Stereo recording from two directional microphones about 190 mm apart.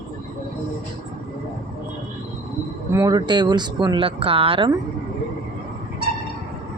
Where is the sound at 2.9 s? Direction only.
20° right (ahead or behind).